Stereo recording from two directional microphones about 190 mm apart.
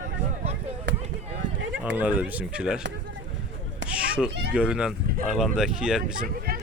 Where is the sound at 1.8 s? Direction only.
10° right (ahead or behind).